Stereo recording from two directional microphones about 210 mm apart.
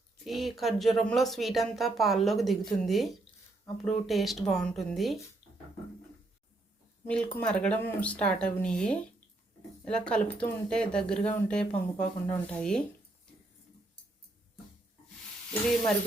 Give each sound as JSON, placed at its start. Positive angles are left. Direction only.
{"t": 0.3, "sound": "speech", "side_deg": 0}
{"t": 7.1, "sound": "speech", "side_deg": 5}